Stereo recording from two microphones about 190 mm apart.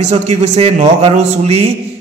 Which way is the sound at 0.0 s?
35° right (ahead or behind).